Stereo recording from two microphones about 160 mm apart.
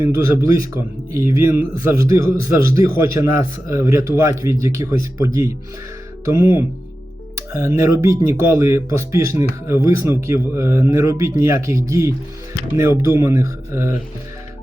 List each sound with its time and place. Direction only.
0.0 s speech: 20° right (ahead or behind)